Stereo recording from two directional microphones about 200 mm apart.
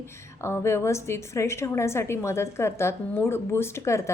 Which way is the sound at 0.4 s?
15° left (ahead or behind).